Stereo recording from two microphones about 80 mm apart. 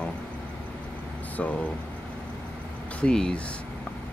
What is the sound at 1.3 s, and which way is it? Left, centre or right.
Speech, centre.